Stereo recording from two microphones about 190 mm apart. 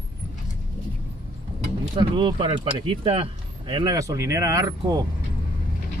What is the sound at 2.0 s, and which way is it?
Speech, 25° right (ahead or behind).